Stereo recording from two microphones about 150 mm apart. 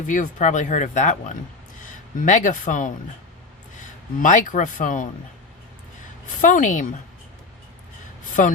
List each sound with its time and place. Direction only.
0.1 s speech: 60° left (ahead or behind)
6.4 s speech: 60° left (ahead or behind)
8.4 s speech: 60° left (ahead or behind)